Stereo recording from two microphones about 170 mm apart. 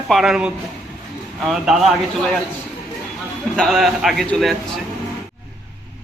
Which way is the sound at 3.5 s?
Centre (ahead or behind).